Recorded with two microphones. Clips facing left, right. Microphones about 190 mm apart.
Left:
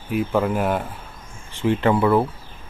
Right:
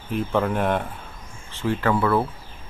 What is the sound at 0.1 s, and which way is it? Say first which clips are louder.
Speech: left 2 dB; 5° left (ahead or behind).